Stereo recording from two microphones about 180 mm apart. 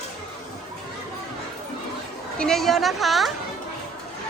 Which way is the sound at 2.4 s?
Centre (ahead or behind).